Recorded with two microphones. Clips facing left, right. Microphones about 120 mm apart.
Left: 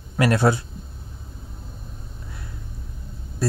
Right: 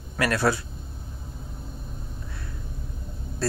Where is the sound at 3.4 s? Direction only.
10° left (ahead or behind).